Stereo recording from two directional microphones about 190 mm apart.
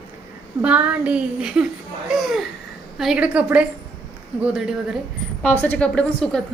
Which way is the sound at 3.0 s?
5° right (ahead or behind).